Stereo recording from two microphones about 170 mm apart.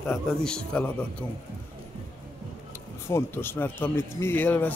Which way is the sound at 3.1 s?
15° left (ahead or behind).